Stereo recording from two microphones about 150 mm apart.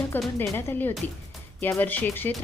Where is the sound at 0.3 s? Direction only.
15° left (ahead or behind).